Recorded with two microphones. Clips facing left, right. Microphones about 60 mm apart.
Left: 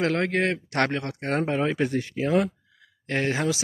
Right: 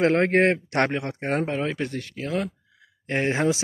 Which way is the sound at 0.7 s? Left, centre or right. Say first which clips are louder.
Right 1 dB; centre.